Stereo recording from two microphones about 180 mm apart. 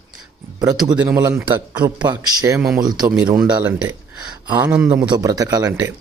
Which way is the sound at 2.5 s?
5° right (ahead or behind).